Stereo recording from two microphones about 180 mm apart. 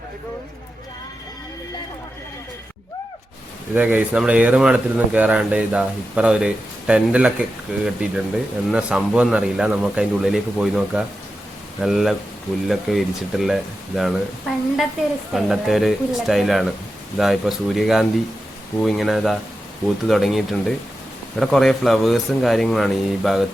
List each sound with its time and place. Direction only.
3.8 s a man's voice: 10° right (ahead or behind)